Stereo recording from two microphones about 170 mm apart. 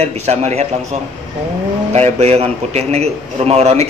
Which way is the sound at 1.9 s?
40° right (ahead or behind).